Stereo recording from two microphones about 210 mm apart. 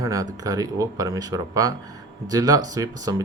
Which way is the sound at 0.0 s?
15° right (ahead or behind).